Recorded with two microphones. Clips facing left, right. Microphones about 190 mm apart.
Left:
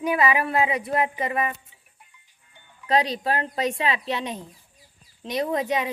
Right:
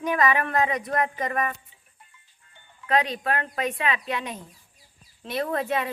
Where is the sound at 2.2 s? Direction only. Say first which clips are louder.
Left 1 dB; 15° left (ahead or behind).